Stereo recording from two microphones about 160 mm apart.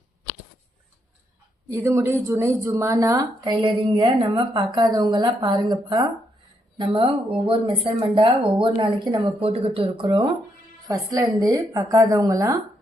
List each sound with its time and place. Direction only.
1.7 s a woman's voice: 15° right (ahead or behind)